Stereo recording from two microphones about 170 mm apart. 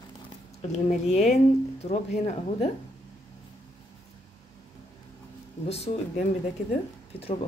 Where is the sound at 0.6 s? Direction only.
40° left (ahead or behind).